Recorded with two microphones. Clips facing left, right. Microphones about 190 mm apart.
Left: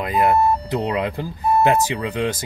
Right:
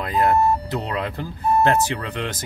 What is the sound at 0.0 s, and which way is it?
Speech, 15° left (ahead or behind).